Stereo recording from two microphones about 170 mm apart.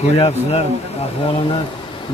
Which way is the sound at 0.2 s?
35° left (ahead or behind).